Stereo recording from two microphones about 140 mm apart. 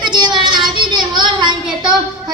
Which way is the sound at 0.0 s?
30° right (ahead or behind).